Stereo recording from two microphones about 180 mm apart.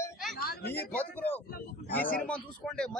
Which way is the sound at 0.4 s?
60° left (ahead or behind).